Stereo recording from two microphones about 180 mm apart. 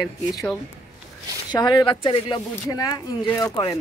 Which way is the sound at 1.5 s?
25° left (ahead or behind).